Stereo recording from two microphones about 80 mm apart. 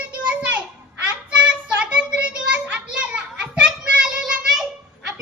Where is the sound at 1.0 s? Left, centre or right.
Centre.